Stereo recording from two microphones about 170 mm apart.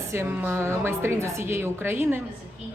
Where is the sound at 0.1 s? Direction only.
15° right (ahead or behind).